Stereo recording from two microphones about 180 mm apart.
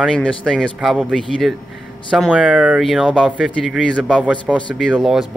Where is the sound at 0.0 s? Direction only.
5° left (ahead or behind).